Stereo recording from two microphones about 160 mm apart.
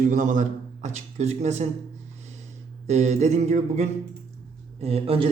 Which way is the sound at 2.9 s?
45° right (ahead or behind).